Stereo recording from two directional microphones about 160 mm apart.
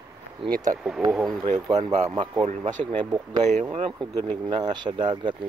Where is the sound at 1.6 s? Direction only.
25° right (ahead or behind).